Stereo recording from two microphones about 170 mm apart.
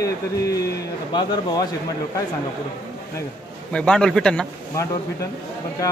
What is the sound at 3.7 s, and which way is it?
Speech, 5° left (ahead or behind).